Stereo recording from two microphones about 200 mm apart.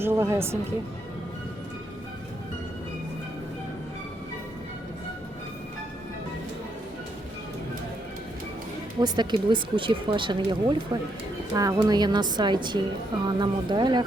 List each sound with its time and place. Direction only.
0.0 s a woman's voice: 10° right (ahead or behind)
9.0 s speech: 20° right (ahead or behind)